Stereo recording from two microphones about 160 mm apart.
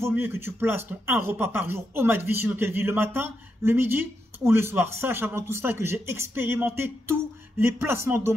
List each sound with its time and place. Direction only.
0.0 s speech: 15° right (ahead or behind)